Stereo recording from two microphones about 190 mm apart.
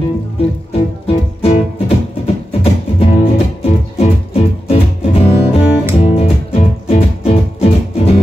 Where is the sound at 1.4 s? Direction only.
30° left (ahead or behind).